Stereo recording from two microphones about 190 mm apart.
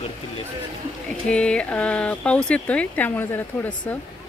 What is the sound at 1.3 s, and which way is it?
Speech, 5° left (ahead or behind).